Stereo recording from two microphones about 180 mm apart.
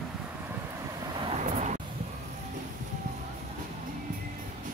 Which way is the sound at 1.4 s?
45° right (ahead or behind).